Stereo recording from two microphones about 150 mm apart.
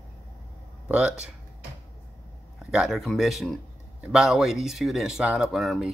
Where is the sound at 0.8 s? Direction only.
5° right (ahead or behind).